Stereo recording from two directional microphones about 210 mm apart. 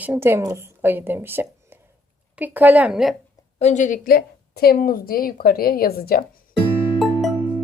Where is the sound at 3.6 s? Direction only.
35° left (ahead or behind).